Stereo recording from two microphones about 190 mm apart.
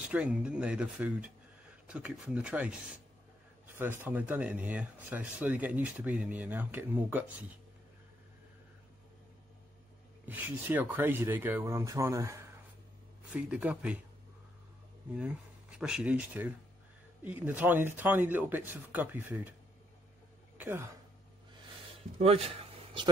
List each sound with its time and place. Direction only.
0.0 s speech: 5° right (ahead or behind)
10.2 s speech: 10° right (ahead or behind)
15.8 s speech: 5° right (ahead or behind)
20.5 s speech: 10° right (ahead or behind)
22.2 s a sound: 30° right (ahead or behind)